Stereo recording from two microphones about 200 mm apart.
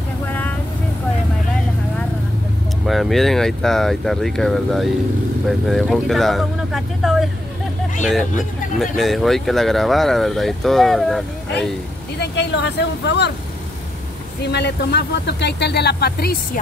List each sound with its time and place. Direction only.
0.3 s vehicle: 10° left (ahead or behind)
2.9 s speech: centre (ahead or behind)
12.2 s speech: 60° left (ahead or behind)
14.4 s speech: 55° left (ahead or behind)